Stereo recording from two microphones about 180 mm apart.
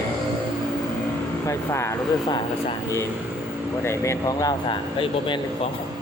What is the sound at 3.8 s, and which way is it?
Speech, 15° left (ahead or behind).